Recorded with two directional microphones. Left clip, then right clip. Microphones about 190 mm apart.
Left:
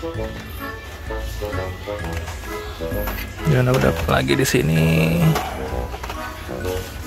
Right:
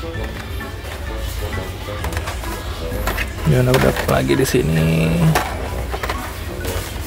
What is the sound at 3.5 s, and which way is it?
Speech, 10° left (ahead or behind).